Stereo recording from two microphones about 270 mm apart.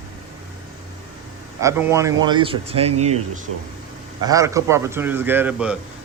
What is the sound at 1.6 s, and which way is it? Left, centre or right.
Speech, centre.